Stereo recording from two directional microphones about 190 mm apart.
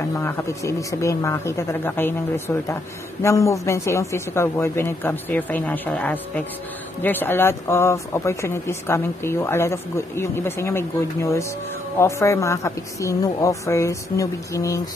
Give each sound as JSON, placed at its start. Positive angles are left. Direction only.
{"t": 0.2, "sound": "speech", "side_deg": 10}